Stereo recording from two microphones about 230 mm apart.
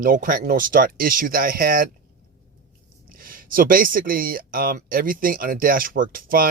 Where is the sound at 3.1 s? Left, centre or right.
Right.